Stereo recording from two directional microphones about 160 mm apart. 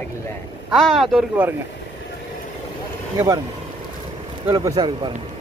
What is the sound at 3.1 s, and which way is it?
Speech, 25° right (ahead or behind).